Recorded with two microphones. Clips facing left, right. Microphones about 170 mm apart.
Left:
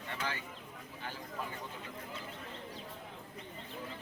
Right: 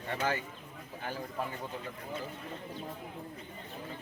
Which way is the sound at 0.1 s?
45° right (ahead or behind).